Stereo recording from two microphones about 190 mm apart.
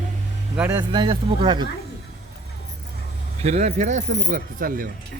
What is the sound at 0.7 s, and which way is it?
Speech, 25° right (ahead or behind).